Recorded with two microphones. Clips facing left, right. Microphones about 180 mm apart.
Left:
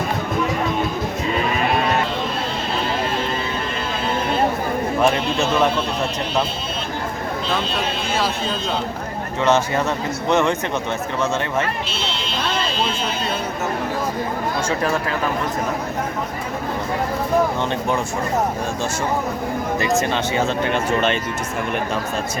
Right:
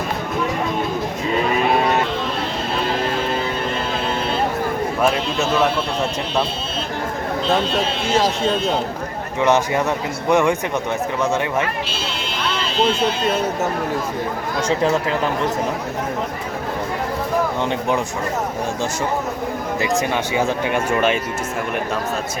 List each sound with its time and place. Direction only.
9.4 s speech: 15° right (ahead or behind)
17.7 s speech: 15° right (ahead or behind)
20.0 s speech: 10° right (ahead or behind)